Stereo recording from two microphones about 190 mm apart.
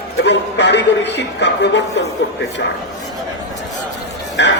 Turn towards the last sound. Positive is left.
turn(degrees=70)  # may be behind; listen again after turning